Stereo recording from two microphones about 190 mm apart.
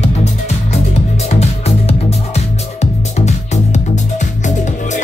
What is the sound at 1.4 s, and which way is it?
Music, 35° left (ahead or behind).